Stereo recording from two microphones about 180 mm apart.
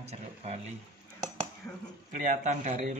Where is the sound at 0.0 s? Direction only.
35° right (ahead or behind).